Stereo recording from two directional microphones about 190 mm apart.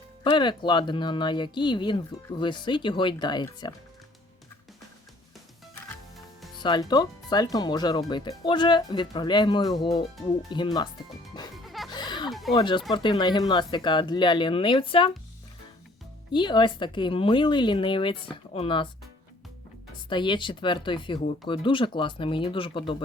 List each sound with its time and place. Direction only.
0.3 s speech: 25° left (ahead or behind)
6.6 s speech: 25° left (ahead or behind)
11.5 s music: centre (ahead or behind)
11.9 s a sound: 25° left (ahead or behind)
12.3 s a sound: centre (ahead or behind)
12.5 s speech: 25° left (ahead or behind)
16.3 s speech: 25° left (ahead or behind)
20.1 s speech: 25° left (ahead or behind)